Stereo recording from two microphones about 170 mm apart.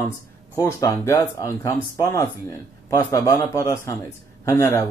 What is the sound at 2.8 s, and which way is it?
A man's voice, 20° left (ahead or behind).